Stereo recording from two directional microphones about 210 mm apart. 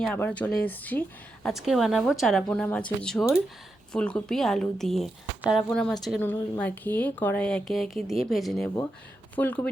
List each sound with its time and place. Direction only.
0.0 s speech: 5° left (ahead or behind)